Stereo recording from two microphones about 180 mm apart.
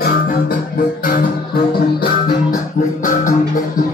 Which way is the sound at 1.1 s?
55° left (ahead or behind).